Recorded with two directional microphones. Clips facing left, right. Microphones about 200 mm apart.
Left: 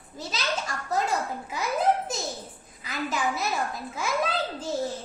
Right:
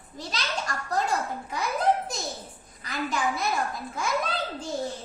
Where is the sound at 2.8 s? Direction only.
5° left (ahead or behind).